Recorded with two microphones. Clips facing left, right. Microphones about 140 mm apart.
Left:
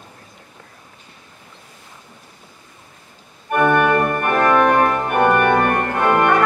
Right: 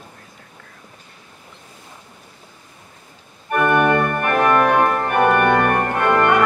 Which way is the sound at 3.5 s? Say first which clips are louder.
Left 2 dB; 5° left (ahead or behind).